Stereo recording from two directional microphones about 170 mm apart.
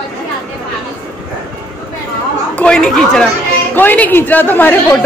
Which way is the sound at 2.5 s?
5° left (ahead or behind).